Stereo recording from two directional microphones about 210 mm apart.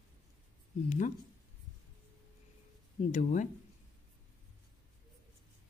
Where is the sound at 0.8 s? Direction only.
35° left (ahead or behind).